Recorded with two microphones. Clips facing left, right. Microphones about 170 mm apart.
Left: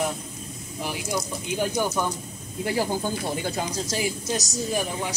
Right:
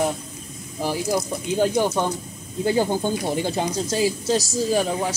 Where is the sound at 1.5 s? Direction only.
30° right (ahead or behind).